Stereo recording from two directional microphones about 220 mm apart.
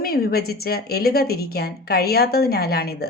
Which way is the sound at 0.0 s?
45° left (ahead or behind).